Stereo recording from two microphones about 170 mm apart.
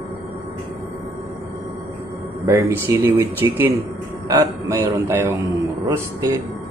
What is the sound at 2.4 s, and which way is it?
Speech, 15° right (ahead or behind).